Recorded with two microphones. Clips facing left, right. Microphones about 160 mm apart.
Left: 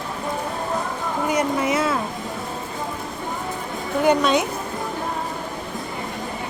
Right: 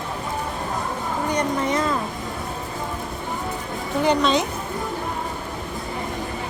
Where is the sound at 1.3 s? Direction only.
5° left (ahead or behind).